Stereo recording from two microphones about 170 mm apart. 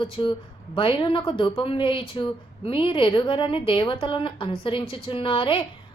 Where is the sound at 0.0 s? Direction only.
30° left (ahead or behind).